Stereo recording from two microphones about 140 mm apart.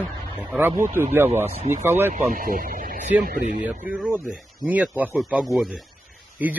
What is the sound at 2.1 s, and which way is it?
Speech, 75° right (ahead or behind).